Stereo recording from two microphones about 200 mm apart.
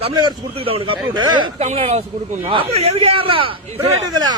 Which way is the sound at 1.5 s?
35° right (ahead or behind).